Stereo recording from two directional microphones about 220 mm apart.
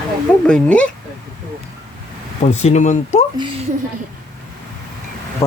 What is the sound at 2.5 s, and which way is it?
Speech, 30° left (ahead or behind).